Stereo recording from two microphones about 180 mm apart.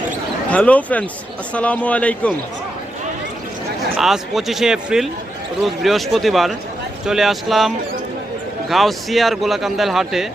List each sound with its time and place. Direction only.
0.5 s a man's voice: 5° left (ahead or behind)
3.9 s a man's voice: centre (ahead or behind)
8.7 s a man's voice: centre (ahead or behind)